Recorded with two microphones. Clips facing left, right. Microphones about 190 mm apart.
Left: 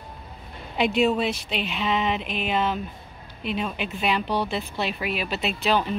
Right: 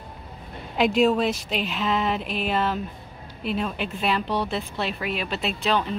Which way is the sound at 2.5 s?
Centre (ahead or behind).